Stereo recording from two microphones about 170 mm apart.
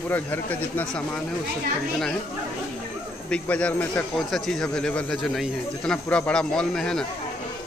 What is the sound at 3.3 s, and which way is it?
Speech, 5° left (ahead or behind).